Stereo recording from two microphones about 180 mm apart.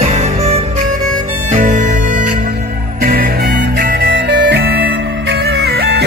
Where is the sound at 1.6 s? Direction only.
45° right (ahead or behind).